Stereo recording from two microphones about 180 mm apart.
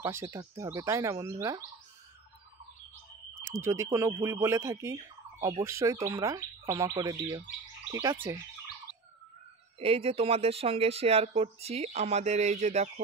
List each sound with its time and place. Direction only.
0.0 s speech: 15° right (ahead or behind)
3.4 s speech: 15° right (ahead or behind)
9.8 s speech: 35° right (ahead or behind)